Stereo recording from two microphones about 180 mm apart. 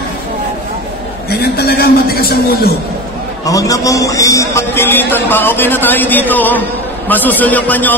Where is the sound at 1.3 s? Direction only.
60° left (ahead or behind).